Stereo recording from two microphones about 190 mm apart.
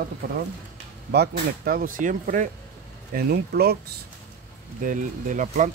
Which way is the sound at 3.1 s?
55° right (ahead or behind).